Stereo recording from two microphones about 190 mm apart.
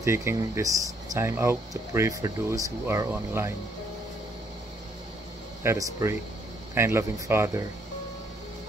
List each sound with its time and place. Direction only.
0.0 s speech: 15° right (ahead or behind)
5.6 s speech: 15° right (ahead or behind)